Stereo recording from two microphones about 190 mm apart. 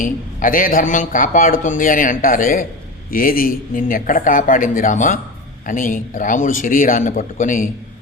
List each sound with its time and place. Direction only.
0.0 s speech: 45° left (ahead or behind)